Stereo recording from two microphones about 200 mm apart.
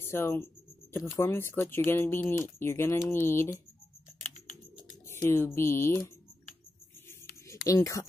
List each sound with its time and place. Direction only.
0.0 s speech: 10° left (ahead or behind)
5.0 s speech: 10° left (ahead or behind)
7.6 s speech: 15° left (ahead or behind)